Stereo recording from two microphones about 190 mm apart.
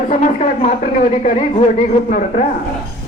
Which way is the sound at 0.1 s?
40° left (ahead or behind).